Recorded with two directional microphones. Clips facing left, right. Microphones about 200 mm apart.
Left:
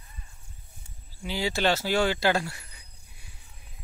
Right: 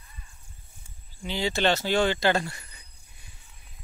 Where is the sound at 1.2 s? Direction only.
5° left (ahead or behind).